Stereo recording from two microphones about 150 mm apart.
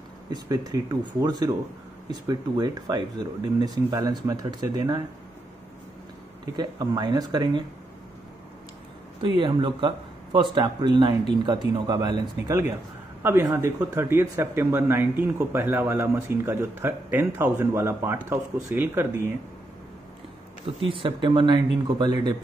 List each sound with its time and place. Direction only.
0.3 s speech: 25° right (ahead or behind)
6.4 s speech: 25° right (ahead or behind)
9.4 s speech: 30° right (ahead or behind); by 19.3 s 15° right (ahead or behind)
20.8 s speech: 35° right (ahead or behind)